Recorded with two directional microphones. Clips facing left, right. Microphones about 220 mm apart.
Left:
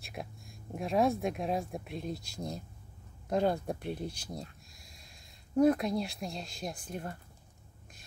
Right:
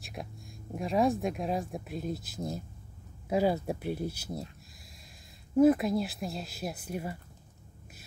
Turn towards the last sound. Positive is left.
turn(degrees=-5)  # may be behind; listen again after turning